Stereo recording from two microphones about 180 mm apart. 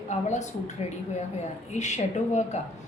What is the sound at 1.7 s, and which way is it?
Speech, 40° left (ahead or behind).